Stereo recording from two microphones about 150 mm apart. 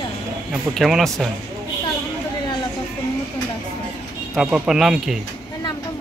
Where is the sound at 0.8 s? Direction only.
Centre (ahead or behind).